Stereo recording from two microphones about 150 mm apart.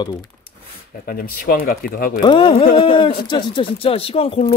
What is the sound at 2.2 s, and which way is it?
Speech, 35° left (ahead or behind).